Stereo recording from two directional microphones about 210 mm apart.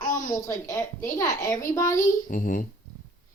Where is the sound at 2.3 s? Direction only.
40° left (ahead or behind).